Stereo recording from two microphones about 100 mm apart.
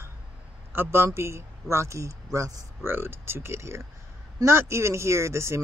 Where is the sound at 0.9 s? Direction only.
25° right (ahead or behind).